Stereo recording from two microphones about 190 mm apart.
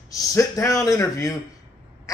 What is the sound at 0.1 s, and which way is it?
Speech, 20° left (ahead or behind).